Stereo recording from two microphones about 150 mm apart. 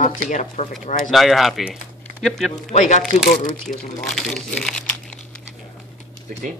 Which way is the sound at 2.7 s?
55° left (ahead or behind).